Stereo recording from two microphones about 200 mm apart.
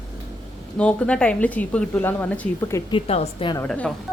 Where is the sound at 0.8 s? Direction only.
5° left (ahead or behind).